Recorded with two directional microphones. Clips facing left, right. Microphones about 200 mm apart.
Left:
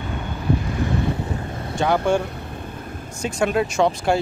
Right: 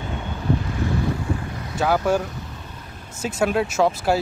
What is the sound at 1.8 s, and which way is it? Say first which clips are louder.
Speech: left 1 dB; 5° right (ahead or behind).